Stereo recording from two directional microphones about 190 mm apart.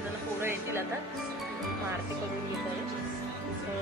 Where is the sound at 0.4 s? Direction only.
15° right (ahead or behind).